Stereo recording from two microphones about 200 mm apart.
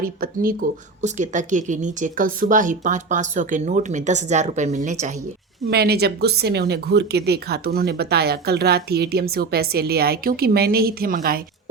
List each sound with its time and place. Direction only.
0.0 s speech: 45° right (ahead or behind)
5.7 s speech: 50° right (ahead or behind)